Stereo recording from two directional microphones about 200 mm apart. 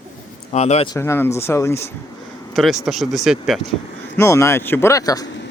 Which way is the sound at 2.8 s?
Centre (ahead or behind).